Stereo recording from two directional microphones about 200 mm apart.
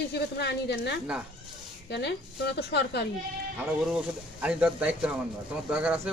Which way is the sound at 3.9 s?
5° right (ahead or behind).